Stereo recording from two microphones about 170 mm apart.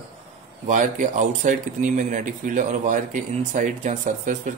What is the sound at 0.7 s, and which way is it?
Speech, 45° right (ahead or behind).